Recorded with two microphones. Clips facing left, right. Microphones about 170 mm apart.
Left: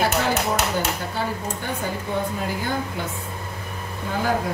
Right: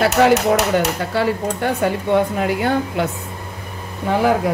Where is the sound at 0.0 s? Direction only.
75° right (ahead or behind).